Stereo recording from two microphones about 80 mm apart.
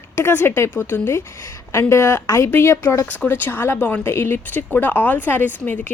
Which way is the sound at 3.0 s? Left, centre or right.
Centre.